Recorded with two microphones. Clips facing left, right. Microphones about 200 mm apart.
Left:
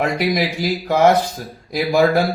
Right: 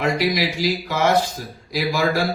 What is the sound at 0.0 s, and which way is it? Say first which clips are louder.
Speech: left 2 dB; 55° left (ahead or behind).